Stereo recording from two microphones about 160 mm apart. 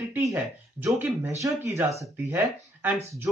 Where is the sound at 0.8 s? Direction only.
15° right (ahead or behind).